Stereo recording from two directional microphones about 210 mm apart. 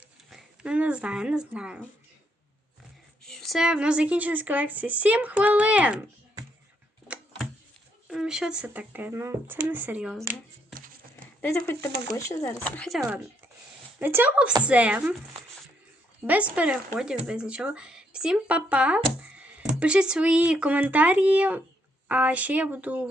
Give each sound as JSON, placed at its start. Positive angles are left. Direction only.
{"t": 0.3, "sound": "speech", "side_deg": -5}
{"t": 3.2, "sound": "a woman's voice", "side_deg": 0}
{"t": 8.1, "sound": "a woman's voice", "side_deg": -5}
{"t": 11.4, "sound": "speech", "side_deg": 10}
{"t": 14.0, "sound": "a woman's voice", "side_deg": -10}
{"t": 16.2, "sound": "a woman's voice", "side_deg": -5}